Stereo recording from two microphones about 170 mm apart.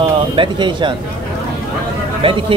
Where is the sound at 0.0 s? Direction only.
30° right (ahead or behind).